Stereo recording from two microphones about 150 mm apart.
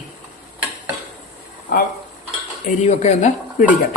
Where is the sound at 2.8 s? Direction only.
50° left (ahead or behind).